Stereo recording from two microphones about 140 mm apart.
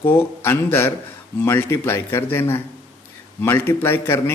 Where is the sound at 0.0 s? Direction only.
15° left (ahead or behind).